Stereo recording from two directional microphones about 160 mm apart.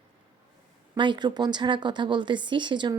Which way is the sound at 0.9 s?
30° right (ahead or behind).